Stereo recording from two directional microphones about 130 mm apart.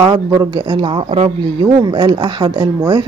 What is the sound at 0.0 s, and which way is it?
Speech, 30° right (ahead or behind).